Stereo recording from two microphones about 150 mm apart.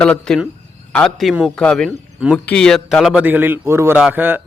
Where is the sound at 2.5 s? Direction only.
5° left (ahead or behind); by 4.4 s 10° right (ahead or behind).